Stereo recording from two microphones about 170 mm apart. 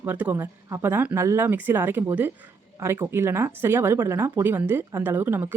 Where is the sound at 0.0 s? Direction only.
10° right (ahead or behind).